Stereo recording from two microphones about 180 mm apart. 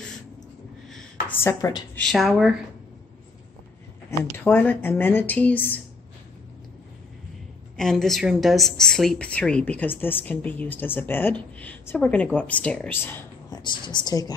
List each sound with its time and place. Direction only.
1.3 s speech: 15° left (ahead or behind)
2.0 s a woman's voice: centre (ahead or behind)
4.2 s speech: 10° left (ahead or behind)
7.7 s a woman's voice: centre (ahead or behind)
13.6 s a woman's voice: 25° left (ahead or behind)